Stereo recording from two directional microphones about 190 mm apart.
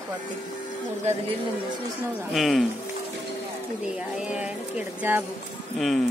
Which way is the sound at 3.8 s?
5° right (ahead or behind).